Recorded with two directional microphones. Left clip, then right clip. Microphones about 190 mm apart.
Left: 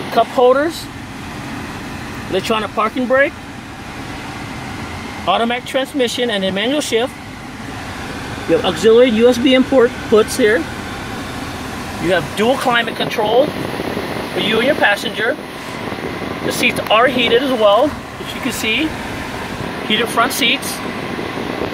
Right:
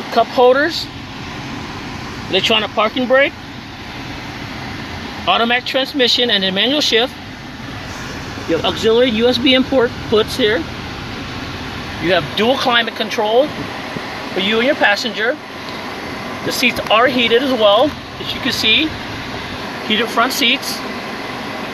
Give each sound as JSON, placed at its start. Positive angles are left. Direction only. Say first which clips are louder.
{"t": 0.1, "sound": "speech", "louder": "even", "side_deg": 15}
{"t": 2.3, "sound": "speech", "louder": "right 3 dB", "side_deg": 10}
{"t": 5.2, "sound": "speech", "louder": "right 2 dB", "side_deg": 5}
{"t": 8.6, "sound": "speech", "louder": "left 3 dB", "side_deg": 15}
{"t": 12.1, "sound": "speech", "louder": "right 1 dB", "side_deg": 20}
{"t": 14.6, "sound": "speech", "louder": "even", "side_deg": 5}
{"t": 16.7, "sound": "speech", "louder": "even", "side_deg": 15}
{"t": 19.9, "sound": "speech", "louder": "even", "side_deg": 10}